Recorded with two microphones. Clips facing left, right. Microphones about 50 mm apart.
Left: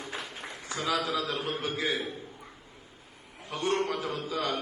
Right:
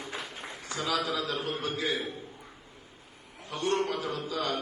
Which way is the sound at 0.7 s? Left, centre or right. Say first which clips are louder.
Left 1 dB; centre.